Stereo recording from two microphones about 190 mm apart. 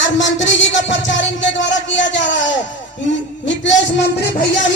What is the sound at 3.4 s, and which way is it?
Speech, 75° left (ahead or behind).